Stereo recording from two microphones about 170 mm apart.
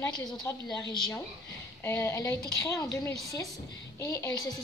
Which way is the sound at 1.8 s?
15° left (ahead or behind).